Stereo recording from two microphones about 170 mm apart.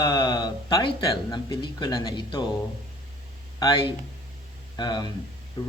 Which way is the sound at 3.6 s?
30° left (ahead or behind).